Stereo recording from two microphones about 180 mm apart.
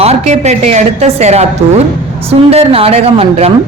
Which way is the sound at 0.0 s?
40° right (ahead or behind).